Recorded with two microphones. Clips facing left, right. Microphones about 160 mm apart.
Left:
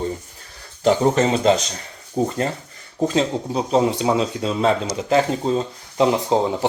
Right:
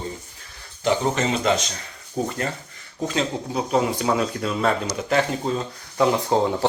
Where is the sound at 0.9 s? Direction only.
35° left (ahead or behind).